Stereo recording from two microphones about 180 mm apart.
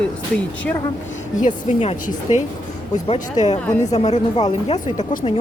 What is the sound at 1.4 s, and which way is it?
Speech, 40° left (ahead or behind).